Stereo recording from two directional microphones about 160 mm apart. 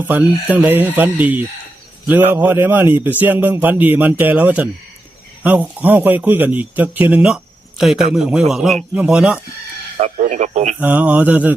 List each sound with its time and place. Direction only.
0.0 s a man's voice: 10° right (ahead or behind)
10.0 s a man's voice: 50° right (ahead or behind)
10.8 s speech: 10° right (ahead or behind)